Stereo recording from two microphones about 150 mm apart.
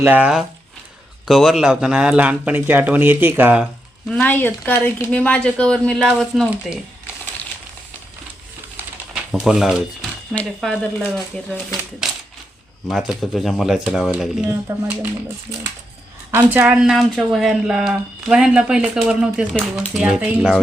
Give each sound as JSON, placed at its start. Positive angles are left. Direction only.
{"t": 0.0, "sound": "speech", "side_deg": -10}
{"t": 4.1, "sound": "speech", "side_deg": 10}
{"t": 9.3, "sound": "speech", "side_deg": -5}
{"t": 14.7, "sound": "speech", "side_deg": -20}
{"t": 16.3, "sound": "speech", "side_deg": -10}